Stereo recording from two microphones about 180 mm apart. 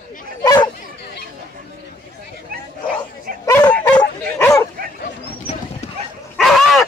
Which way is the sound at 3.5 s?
20° left (ahead or behind).